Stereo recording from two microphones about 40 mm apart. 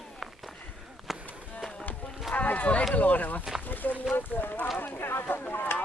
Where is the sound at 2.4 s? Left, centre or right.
Left.